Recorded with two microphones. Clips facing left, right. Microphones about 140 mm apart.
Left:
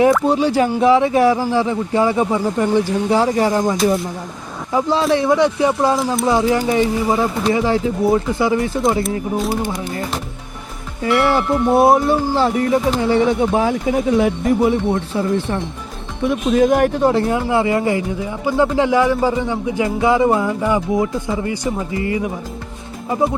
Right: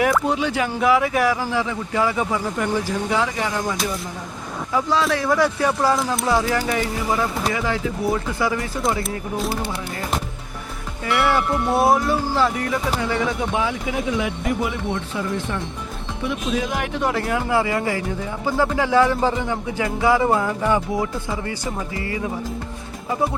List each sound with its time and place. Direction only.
0.0 s speech: 35° left (ahead or behind)
4.7 s speech: 30° left (ahead or behind)
11.2 s speech: 30° left (ahead or behind)
16.2 s speech: 45° left (ahead or behind)
17.0 s speech: 30° left (ahead or behind)